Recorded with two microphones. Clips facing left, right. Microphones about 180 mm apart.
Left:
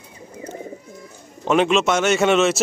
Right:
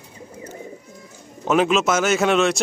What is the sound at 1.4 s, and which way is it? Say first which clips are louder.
A man's voice: left 1 dB; centre (ahead or behind).